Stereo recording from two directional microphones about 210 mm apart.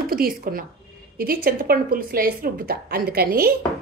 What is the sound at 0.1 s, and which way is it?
A woman's voice, 45° right (ahead or behind).